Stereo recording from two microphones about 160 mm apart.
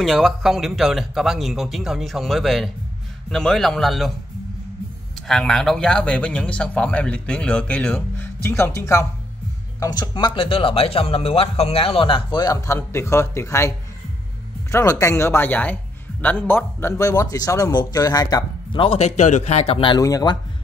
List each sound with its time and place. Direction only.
0.0 s speech: centre (ahead or behind)
5.3 s speech: centre (ahead or behind); by 20.0 s 35° left (ahead or behind)
20.0 s speech: 20° left (ahead or behind)